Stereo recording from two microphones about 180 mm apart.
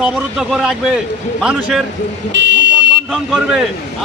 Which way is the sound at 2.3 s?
80° right.